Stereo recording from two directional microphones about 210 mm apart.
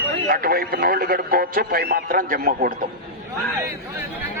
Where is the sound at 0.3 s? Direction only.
45° right (ahead or behind).